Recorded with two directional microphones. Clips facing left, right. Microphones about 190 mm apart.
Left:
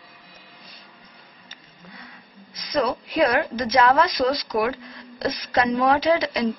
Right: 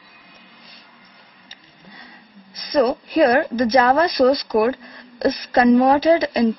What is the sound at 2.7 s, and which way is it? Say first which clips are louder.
A woman's voice: right 6 dB; 40° right (ahead or behind).